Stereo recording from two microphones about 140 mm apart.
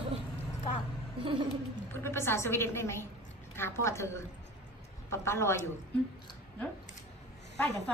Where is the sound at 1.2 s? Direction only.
35° right (ahead or behind).